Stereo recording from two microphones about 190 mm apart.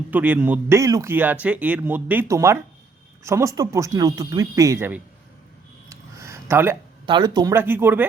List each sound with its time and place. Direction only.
0.1 s speech: 10° right (ahead or behind)
5.9 s a sound: 15° right (ahead or behind)
7.0 s speech: 25° right (ahead or behind)